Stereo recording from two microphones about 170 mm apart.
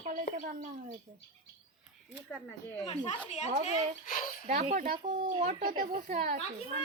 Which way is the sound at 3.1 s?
40° left (ahead or behind).